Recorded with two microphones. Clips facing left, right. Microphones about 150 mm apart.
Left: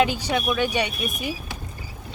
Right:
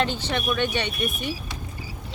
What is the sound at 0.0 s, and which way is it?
Speech, 10° left (ahead or behind).